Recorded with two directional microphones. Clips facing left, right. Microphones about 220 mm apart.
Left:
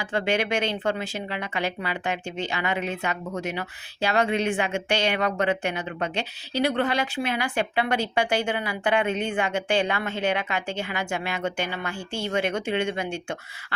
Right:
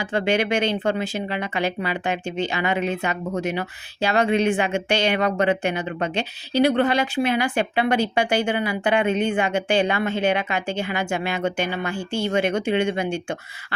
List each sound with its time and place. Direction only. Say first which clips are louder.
0.0 s a woman's voice: right 4 dB; 20° right (ahead or behind)